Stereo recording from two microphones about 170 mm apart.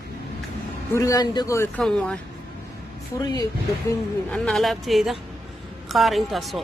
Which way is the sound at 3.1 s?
25° left (ahead or behind).